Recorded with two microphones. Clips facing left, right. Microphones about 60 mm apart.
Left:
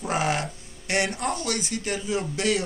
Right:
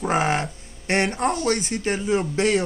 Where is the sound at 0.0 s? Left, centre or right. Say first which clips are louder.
Right 4 dB; right.